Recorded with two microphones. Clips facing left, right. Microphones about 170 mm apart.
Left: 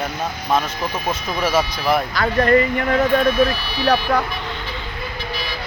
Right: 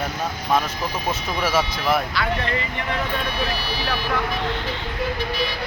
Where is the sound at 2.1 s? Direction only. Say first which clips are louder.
Left 9 dB; 50° left (ahead or behind).